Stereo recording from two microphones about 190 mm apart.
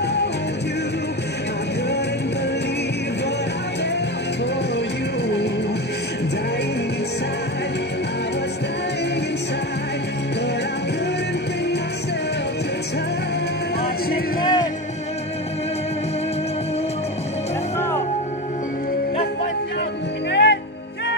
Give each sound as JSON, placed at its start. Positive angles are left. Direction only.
{"t": 14.4, "sound": "music", "side_deg": 25}
{"t": 20.2, "sound": "music", "side_deg": 65}